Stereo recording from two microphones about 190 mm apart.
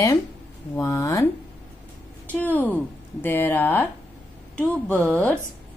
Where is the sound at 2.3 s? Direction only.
10° left (ahead or behind).